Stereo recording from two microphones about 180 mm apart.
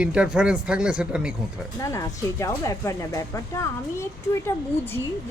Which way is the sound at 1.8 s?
15° left (ahead or behind).